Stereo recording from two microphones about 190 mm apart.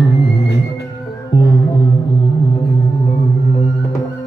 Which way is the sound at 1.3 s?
20° left (ahead or behind).